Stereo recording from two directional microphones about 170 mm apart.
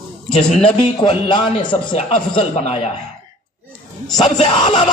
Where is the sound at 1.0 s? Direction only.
25° left (ahead or behind).